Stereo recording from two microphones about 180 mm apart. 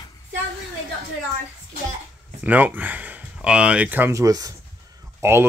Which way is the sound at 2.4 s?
10° right (ahead or behind).